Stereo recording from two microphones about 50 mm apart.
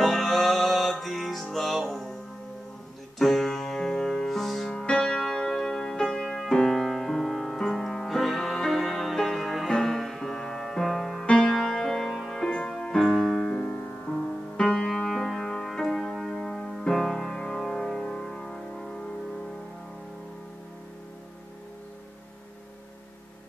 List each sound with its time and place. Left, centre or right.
0.0 s music: centre
3.2 s music: centre
4.6 s music: centre
11.5 s keyboard: centre
14.6 s music: centre